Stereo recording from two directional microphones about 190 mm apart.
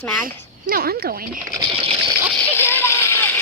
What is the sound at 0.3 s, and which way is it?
A woman's voice, 50° right (ahead or behind).